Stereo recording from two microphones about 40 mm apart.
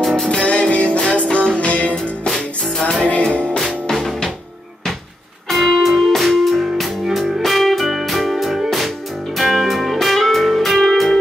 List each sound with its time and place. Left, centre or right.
0.3 s music: left
2.2 s music: centre
3.0 s music: left
3.9 s music: centre
5.5 s music: centre